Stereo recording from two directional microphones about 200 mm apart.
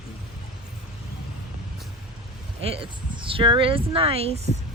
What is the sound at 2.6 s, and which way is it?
Speech, 30° right (ahead or behind).